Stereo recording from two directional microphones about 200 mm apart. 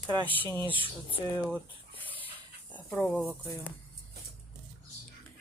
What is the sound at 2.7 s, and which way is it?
Speech, 5° left (ahead or behind).